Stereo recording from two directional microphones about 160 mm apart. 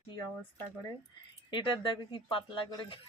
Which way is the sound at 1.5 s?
30° left (ahead or behind).